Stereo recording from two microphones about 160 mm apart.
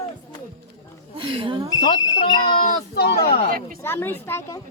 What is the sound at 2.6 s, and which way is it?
Speech, 85° left.